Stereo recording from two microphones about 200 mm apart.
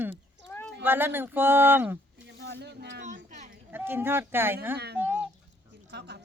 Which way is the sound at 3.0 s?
35° right (ahead or behind).